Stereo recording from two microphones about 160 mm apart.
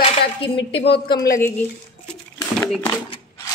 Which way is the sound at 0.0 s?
35° left (ahead or behind).